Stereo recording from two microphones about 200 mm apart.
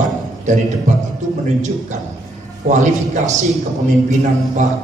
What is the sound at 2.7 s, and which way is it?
A man's voice, 35° right (ahead or behind).